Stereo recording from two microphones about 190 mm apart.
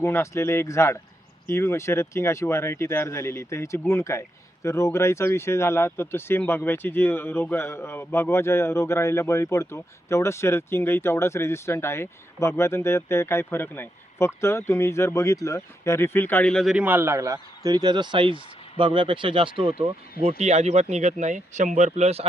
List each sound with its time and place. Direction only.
0.0 s speech: 15° left (ahead or behind); by 22.3 s 35° right (ahead or behind)